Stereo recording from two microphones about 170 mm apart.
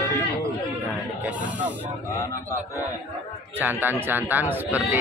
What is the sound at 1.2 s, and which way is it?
Speech, 10° right (ahead or behind).